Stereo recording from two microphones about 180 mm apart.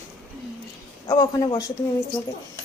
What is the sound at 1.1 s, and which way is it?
Speech, 25° left (ahead or behind).